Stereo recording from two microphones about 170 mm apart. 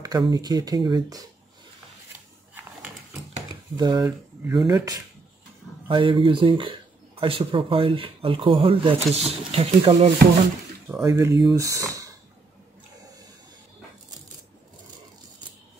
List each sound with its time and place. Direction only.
0.0 s speech: 25° right (ahead or behind)
2.5 s a sound: 10° right (ahead or behind)
3.7 s speech: 25° right (ahead or behind)
10.9 s speech: 15° right (ahead or behind)